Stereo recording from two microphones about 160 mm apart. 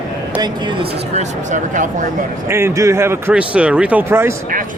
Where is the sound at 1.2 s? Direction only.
50° right (ahead or behind).